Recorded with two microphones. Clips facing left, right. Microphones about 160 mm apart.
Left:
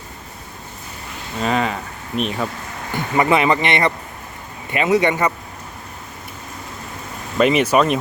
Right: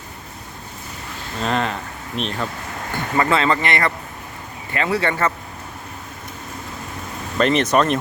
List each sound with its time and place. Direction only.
1.4 s speech: 5° left (ahead or behind)
7.3 s speech: 10° left (ahead or behind)